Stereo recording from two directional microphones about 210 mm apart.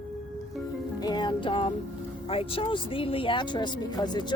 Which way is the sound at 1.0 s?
20° left (ahead or behind).